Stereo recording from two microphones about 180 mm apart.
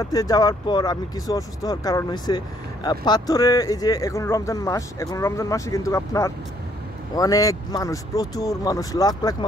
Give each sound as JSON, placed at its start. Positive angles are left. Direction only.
{"t": 0.0, "sound": "speech", "side_deg": 20}